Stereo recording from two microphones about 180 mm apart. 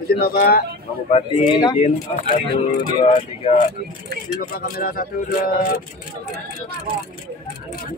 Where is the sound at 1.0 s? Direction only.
35° left (ahead or behind).